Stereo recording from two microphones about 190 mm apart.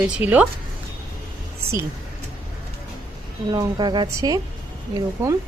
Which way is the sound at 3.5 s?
20° right (ahead or behind).